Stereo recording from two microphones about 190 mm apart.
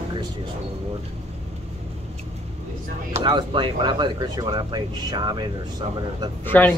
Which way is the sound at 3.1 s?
25° right (ahead or behind).